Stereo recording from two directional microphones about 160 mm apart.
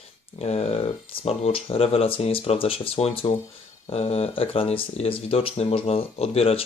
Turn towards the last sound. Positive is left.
turn(degrees=40)  # may be behind; listen again after turning